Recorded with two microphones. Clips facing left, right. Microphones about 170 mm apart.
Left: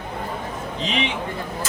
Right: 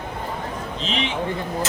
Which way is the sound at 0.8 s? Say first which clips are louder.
Left 2 dB; 15° left (ahead or behind).